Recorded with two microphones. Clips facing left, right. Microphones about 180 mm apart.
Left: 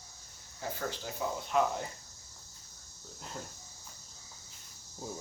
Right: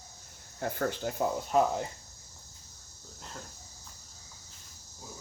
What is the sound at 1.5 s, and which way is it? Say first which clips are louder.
Speech: right 3 dB; 35° right (ahead or behind).